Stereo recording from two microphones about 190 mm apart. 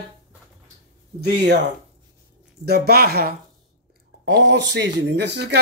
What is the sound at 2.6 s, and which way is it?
Speech, 55° right (ahead or behind).